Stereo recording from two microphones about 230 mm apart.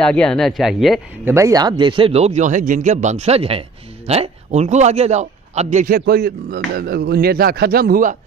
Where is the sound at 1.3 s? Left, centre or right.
Centre.